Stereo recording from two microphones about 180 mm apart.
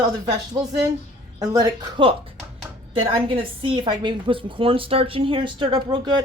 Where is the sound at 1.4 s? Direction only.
20° right (ahead or behind).